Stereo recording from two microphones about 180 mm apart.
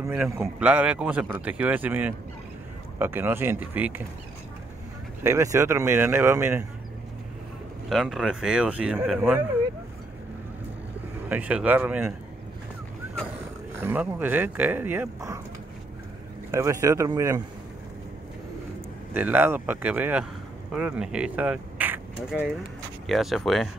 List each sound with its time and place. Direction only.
0.0 s a man's voice: 10° right (ahead or behind)
5.2 s a man's voice: 15° right (ahead or behind)
7.9 s speech: centre (ahead or behind)
11.2 s a man's voice: 10° right (ahead or behind)
13.7 s a man's voice: 10° right (ahead or behind)
16.5 s a man's voice: 15° right (ahead or behind)
19.1 s a man's voice: 10° right (ahead or behind)